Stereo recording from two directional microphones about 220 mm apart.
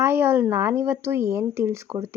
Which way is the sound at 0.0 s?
10° right (ahead or behind).